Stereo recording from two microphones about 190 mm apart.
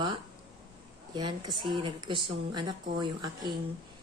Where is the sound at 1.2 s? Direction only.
20° right (ahead or behind).